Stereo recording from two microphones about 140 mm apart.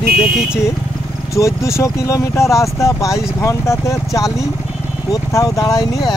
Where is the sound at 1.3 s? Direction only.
20° left (ahead or behind).